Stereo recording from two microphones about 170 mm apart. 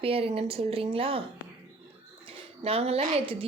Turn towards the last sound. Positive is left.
turn(degrees=-35)  # may be behind; listen again after turning